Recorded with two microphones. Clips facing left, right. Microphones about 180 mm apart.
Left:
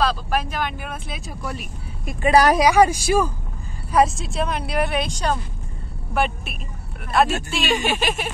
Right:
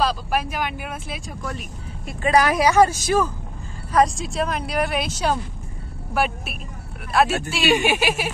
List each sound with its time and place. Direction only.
0.0 s speech: 10° right (ahead or behind)
1.4 s speech: 5° left (ahead or behind)
2.3 s a woman's voice: 35° left (ahead or behind)
2.6 s a woman's voice: 10° left (ahead or behind); by 8.3 s 10° right (ahead or behind)